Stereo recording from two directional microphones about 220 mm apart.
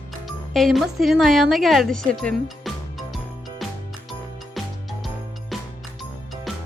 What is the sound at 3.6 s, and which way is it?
Music, centre (ahead or behind).